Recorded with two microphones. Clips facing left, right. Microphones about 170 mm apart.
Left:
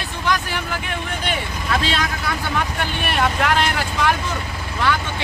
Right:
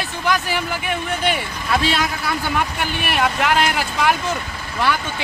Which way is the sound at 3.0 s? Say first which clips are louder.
Even; 5° right (ahead or behind).